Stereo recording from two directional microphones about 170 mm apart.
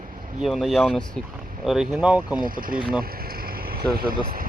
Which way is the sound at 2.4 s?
55° right (ahead or behind).